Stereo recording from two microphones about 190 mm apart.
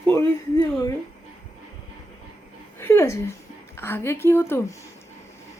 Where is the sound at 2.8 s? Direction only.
15° left (ahead or behind).